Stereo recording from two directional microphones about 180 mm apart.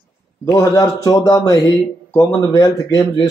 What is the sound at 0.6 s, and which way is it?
Speech, 20° left (ahead or behind).